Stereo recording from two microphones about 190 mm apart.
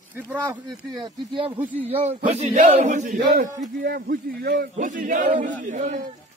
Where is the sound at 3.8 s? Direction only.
50° right (ahead or behind).